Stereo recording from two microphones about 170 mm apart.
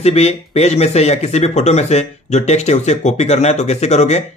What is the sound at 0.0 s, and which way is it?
Speech, 40° left (ahead or behind).